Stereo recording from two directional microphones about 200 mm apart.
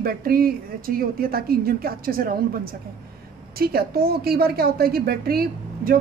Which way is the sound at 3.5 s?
50° right (ahead or behind).